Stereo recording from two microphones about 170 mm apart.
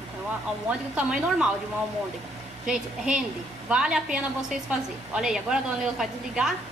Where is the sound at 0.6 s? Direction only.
5° right (ahead or behind).